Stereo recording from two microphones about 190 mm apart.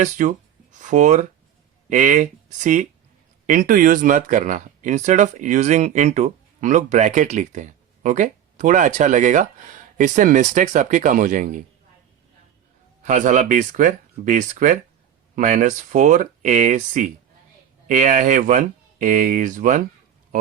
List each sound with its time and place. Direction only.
0.0 s speech: 40° right (ahead or behind)
13.0 s speech: 40° right (ahead or behind)